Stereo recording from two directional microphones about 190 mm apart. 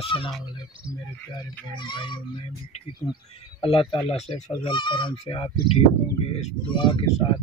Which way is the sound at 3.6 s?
25° left (ahead or behind).